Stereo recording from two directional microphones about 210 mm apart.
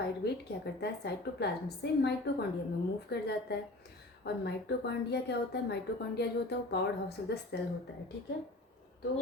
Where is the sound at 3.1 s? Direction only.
50° left (ahead or behind).